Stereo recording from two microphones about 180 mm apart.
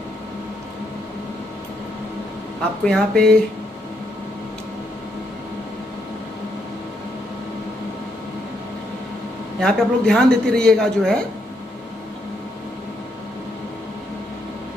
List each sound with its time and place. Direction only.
2.8 s speech: 5° left (ahead or behind)
9.6 s speech: 5° left (ahead or behind)